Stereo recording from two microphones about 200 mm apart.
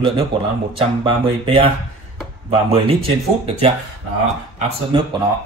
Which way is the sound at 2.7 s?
30° right (ahead or behind).